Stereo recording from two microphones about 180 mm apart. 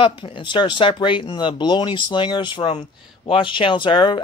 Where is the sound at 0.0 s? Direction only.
30° left (ahead or behind).